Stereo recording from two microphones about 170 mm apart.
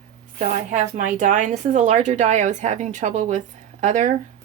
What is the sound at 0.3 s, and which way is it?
Speech, 45° right (ahead or behind).